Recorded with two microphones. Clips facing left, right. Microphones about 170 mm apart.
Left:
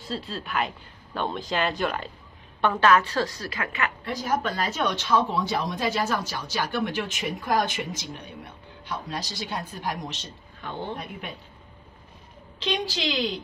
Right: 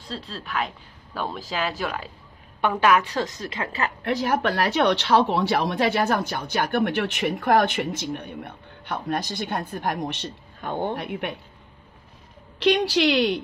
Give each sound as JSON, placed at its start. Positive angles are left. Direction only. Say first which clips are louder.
{"t": 0.0, "sound": "a woman's voice", "louder": "left 2 dB", "side_deg": 0}
{"t": 4.0, "sound": "speech", "louder": "right 5 dB", "side_deg": -65}
{"t": 12.5, "sound": "a woman's voice", "louder": "right 9 dB", "side_deg": -70}